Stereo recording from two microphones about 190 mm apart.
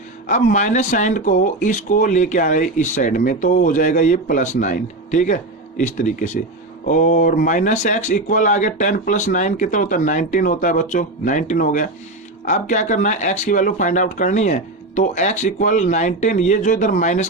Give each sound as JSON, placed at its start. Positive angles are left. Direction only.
{"t": 0.3, "sound": "speech", "side_deg": 40}